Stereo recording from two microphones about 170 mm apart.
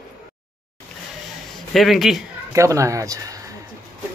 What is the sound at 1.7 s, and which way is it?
Speech, centre (ahead or behind).